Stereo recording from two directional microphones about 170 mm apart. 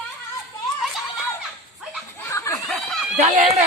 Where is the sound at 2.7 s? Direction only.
Centre (ahead or behind).